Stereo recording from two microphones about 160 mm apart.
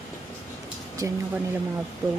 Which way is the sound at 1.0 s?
20° right (ahead or behind).